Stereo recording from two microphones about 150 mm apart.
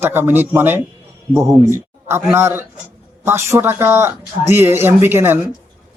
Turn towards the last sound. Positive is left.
turn(degrees=-15)  # may be behind; listen again after turning